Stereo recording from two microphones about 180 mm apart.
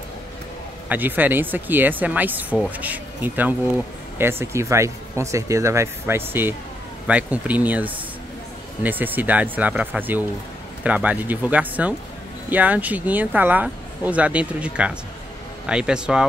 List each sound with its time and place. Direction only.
0.8 s speech: 10° right (ahead or behind)